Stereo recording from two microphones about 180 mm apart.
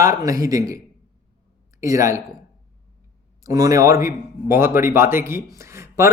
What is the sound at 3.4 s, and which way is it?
Speech, 20° right (ahead or behind).